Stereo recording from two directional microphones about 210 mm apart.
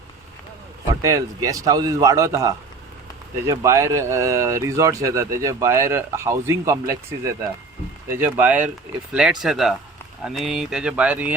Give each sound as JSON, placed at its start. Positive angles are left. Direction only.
{"t": 1.0, "sound": "speech", "side_deg": -15}